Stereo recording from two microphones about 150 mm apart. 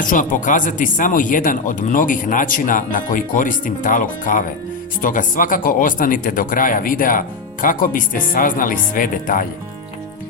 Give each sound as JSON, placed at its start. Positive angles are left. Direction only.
{"t": 0.0, "sound": "speech", "side_deg": 60}